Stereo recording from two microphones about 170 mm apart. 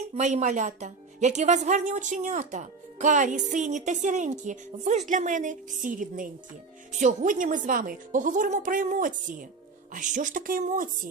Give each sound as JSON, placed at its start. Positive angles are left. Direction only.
{"t": 0.1, "sound": "speech", "side_deg": -40}